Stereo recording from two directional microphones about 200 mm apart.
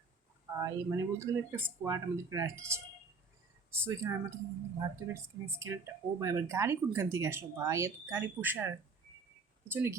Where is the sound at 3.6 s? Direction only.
10° right (ahead or behind).